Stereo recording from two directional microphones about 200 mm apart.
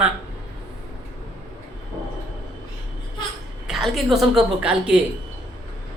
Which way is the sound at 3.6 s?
Centre (ahead or behind).